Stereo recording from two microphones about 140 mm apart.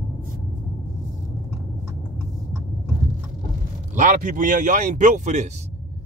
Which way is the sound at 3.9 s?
65° right (ahead or behind).